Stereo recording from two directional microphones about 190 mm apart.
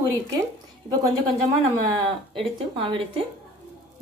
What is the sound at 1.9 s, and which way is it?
Speech, 25° right (ahead or behind).